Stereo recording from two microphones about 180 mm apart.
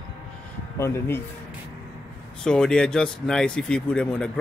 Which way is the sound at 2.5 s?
5° left (ahead or behind).